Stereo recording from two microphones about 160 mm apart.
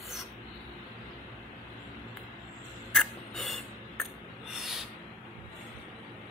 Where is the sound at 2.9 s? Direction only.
5° left (ahead or behind).